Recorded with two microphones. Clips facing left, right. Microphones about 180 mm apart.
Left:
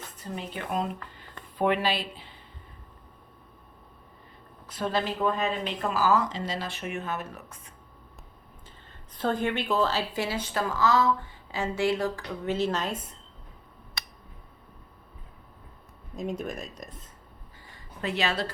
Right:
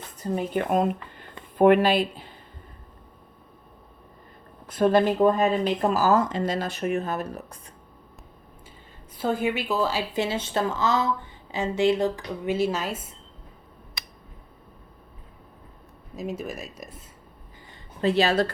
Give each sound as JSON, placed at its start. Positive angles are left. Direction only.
{"t": 0.2, "sound": "speech", "side_deg": -45}
{"t": 4.6, "sound": "speech", "side_deg": -50}
{"t": 9.1, "sound": "a woman's voice", "side_deg": -5}
{"t": 10.2, "sound": "a woman's voice", "side_deg": -25}
{"t": 16.1, "sound": "speech", "side_deg": -5}
{"t": 18.0, "sound": "speech", "side_deg": -35}